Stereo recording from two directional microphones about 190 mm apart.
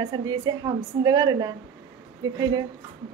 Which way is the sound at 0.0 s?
20° right (ahead or behind).